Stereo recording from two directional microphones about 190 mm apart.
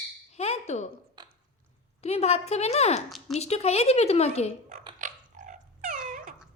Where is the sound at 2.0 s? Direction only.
35° left (ahead or behind).